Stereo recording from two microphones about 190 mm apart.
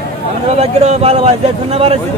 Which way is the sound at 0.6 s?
35° right (ahead or behind).